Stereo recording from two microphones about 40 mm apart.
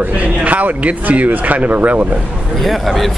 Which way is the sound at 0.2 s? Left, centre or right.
Right.